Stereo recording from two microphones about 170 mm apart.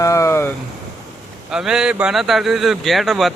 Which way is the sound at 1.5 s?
5° right (ahead or behind).